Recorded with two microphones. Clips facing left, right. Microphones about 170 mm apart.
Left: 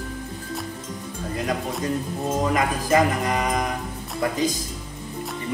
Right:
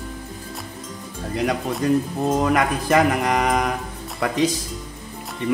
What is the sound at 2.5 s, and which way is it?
Speech, 70° right (ahead or behind).